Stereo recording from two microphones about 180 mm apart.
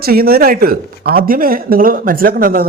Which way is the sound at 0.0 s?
55° right (ahead or behind).